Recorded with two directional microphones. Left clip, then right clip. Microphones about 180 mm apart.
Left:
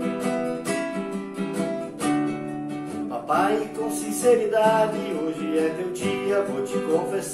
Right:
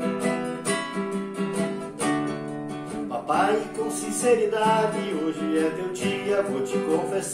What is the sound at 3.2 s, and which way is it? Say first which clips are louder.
Music: left 1 dB; 15° right (ahead or behind).